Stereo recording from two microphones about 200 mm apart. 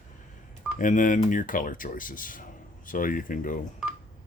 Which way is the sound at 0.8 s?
40° left (ahead or behind).